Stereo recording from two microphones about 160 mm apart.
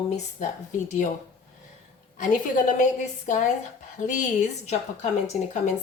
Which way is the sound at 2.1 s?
50° left (ahead or behind).